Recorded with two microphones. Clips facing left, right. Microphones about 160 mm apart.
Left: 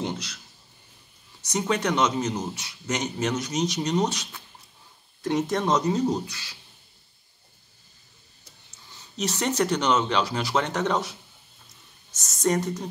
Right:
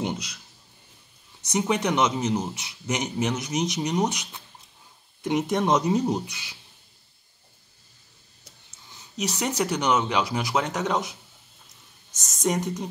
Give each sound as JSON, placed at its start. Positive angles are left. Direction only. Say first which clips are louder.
{"t": 0.0, "sound": "a sound", "louder": "right 1 dB", "side_deg": -15}
{"t": 1.4, "sound": "speech", "louder": "right 1 dB", "side_deg": -20}
{"t": 9.1, "sound": "speech", "louder": "left 1 dB", "side_deg": -15}